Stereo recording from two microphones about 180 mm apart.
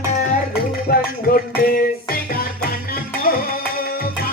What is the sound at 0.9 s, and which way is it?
Music, 55° left (ahead or behind).